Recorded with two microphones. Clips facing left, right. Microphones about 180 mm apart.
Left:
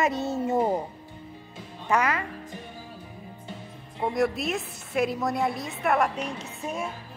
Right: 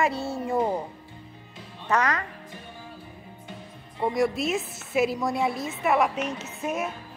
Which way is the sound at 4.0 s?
Centre (ahead or behind).